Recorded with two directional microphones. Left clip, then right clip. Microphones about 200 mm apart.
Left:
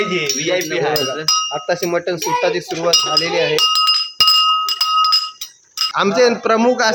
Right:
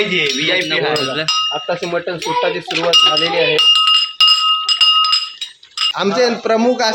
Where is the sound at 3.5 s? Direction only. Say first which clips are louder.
Right 5 dB; 50° left (ahead or behind).